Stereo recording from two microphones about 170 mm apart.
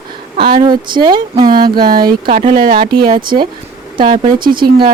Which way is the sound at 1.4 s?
60° right (ahead or behind).